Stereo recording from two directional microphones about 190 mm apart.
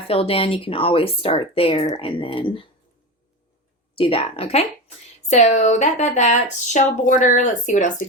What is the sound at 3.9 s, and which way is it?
Speech, 30° left (ahead or behind).